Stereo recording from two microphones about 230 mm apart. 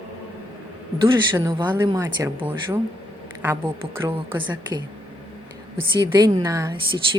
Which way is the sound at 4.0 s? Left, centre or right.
Centre.